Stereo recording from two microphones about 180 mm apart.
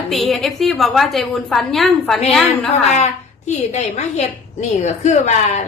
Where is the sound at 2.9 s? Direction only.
40° left (ahead or behind).